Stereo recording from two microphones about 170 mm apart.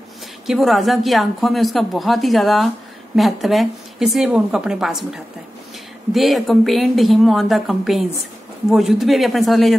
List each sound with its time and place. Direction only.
0.5 s speech: centre (ahead or behind)